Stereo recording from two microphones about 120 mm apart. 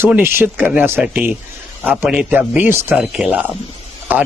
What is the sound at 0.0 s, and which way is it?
Speech, 20° right (ahead or behind).